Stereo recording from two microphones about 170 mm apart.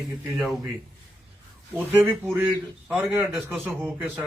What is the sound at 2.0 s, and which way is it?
Speech, 10° right (ahead or behind).